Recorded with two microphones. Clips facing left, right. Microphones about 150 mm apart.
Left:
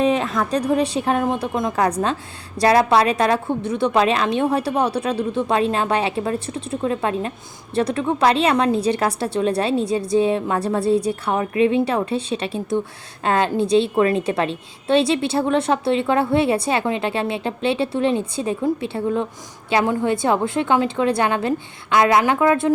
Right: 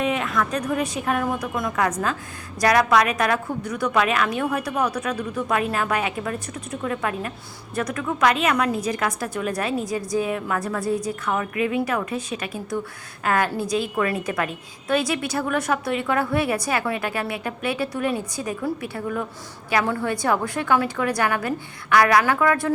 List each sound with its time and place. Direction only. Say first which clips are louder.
0.0 s a woman's voice: left 4 dB; 30° left (ahead or behind)